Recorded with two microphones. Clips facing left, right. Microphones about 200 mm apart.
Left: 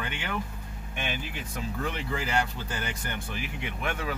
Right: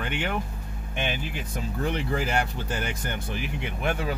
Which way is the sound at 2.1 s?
50° right (ahead or behind).